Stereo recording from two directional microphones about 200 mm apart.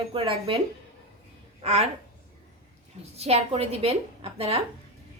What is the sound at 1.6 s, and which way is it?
Speech, 30° right (ahead or behind).